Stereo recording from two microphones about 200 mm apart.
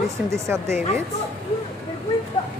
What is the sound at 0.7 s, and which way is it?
Speech, 35° left (ahead or behind).